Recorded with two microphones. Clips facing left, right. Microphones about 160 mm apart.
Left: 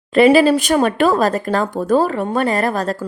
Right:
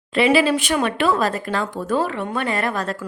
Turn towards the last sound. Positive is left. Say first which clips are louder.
# left 5 dB
turn(degrees=40)  # may be behind; listen again after turning